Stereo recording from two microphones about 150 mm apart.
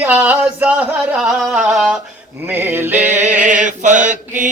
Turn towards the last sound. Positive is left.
turn(degrees=-60)  # may be behind; listen again after turning